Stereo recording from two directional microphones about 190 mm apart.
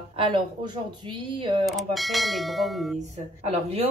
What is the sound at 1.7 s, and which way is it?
Speech, centre (ahead or behind).